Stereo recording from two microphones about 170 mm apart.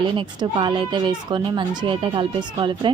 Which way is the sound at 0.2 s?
30° right (ahead or behind).